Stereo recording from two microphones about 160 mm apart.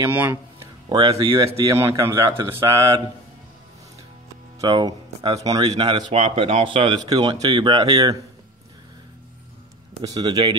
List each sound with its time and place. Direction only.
0.1 s a man's voice: 10° right (ahead or behind)
0.8 s speech: 25° right (ahead or behind)
4.6 s speech: 25° right (ahead or behind)
10.0 s speech: 25° right (ahead or behind)